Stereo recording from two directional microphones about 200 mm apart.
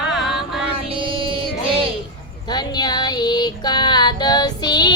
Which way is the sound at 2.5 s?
20° left (ahead or behind).